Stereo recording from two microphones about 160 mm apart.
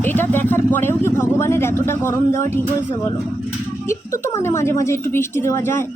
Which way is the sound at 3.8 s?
15° left (ahead or behind).